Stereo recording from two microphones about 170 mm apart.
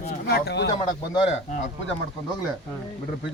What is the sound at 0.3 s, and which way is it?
Speech, 70° left (ahead or behind).